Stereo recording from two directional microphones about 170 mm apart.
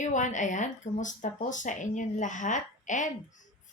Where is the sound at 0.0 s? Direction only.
45° left (ahead or behind).